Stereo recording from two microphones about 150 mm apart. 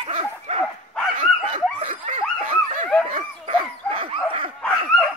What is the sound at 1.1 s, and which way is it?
Snicker, 55° right (ahead or behind).